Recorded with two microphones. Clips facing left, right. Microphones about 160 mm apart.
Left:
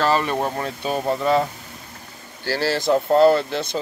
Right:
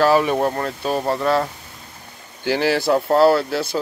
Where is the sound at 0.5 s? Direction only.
5° left (ahead or behind).